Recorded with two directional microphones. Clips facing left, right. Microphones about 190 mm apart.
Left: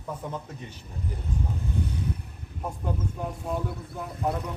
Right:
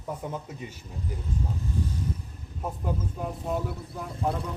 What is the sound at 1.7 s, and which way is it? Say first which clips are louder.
Vehicle: left 1 dB; 65° left (ahead or behind).